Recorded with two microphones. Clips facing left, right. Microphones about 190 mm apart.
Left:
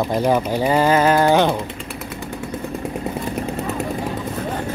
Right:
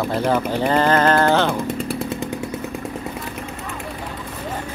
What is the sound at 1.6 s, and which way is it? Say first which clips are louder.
Speech: right 7 dB; 40° right (ahead or behind).